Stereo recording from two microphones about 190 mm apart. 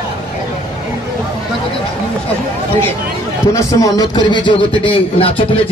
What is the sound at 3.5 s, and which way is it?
A man's voice, 20° left (ahead or behind).